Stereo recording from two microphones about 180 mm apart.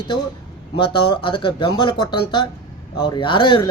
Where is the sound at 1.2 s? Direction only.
25° left (ahead or behind).